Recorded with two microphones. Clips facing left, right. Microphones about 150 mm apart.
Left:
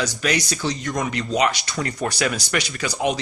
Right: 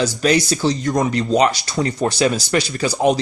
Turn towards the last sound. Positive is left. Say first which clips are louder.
# right 6 dB
turn(degrees=-35)  # may be behind; listen again after turning